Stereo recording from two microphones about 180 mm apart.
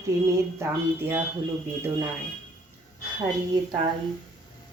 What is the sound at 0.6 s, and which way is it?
Speech, 10° right (ahead or behind).